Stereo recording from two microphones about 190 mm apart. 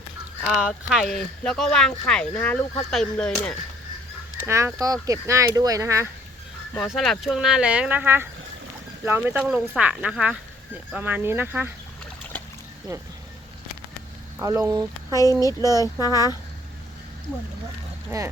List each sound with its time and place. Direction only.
0.4 s speech: 5° right (ahead or behind)
4.4 s speech: 15° right (ahead or behind)
6.7 s speech: centre (ahead or behind)
14.3 s speech: 15° right (ahead or behind)